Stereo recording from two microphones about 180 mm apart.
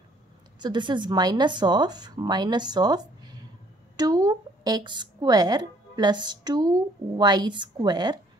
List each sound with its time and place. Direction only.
0.6 s a woman's voice: 25° right (ahead or behind)